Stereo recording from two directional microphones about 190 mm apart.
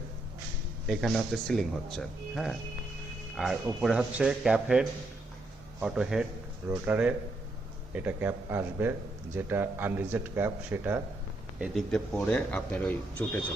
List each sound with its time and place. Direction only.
0.9 s speech: centre (ahead or behind)
11.6 s speech: centre (ahead or behind)